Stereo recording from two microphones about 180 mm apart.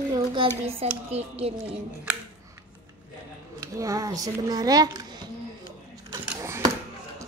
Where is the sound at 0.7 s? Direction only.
35° right (ahead or behind).